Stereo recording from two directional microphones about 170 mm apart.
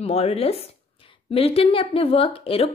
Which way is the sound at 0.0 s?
35° left (ahead or behind).